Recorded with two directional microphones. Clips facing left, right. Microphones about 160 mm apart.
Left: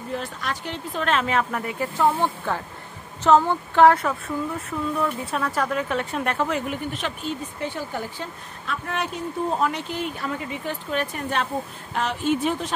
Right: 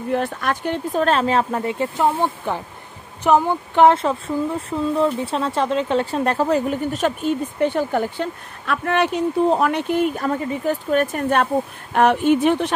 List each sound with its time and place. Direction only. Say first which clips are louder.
0.1 s a woman's voice: right 8 dB; 55° right (ahead or behind)
1.0 s speech: right 3 dB; 35° right (ahead or behind)
7.6 s a woman's voice: right 11 dB; 60° right (ahead or behind)